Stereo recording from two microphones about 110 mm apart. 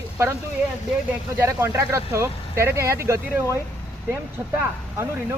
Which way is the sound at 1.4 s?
25° right (ahead or behind).